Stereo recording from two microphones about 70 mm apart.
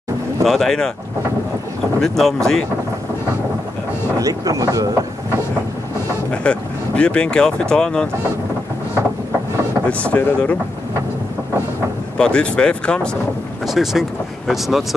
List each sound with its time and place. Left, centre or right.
0.5 s speech: centre
2.0 s speech: centre
4.2 s speech: right
6.3 s speech: centre
9.8 s speech: left
12.2 s speech: centre
13.7 s speech: centre